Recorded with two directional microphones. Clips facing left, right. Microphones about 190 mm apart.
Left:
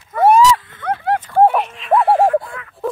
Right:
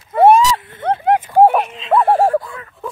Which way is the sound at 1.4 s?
5° right (ahead or behind).